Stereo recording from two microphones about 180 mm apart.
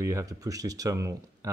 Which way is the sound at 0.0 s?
15° right (ahead or behind).